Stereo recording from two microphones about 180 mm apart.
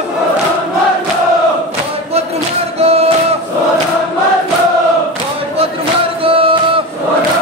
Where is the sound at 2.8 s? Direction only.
35° right (ahead or behind).